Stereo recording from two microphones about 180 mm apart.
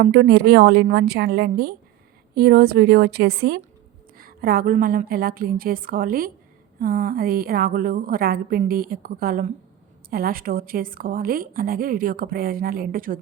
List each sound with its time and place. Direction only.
0.0 s a woman's voice: 65° right (ahead or behind)